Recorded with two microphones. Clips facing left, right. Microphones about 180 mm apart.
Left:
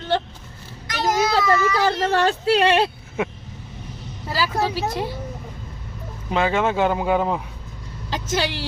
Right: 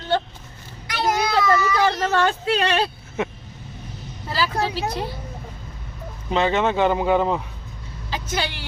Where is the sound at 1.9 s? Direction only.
30° left (ahead or behind).